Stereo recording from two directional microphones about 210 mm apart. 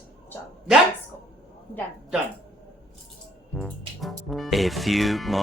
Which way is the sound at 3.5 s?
Centre (ahead or behind).